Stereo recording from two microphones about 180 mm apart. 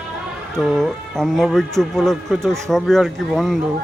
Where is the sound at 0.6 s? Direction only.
Centre (ahead or behind).